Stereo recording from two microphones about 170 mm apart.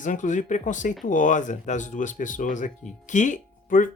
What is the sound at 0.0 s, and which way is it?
Speech, 50° left (ahead or behind).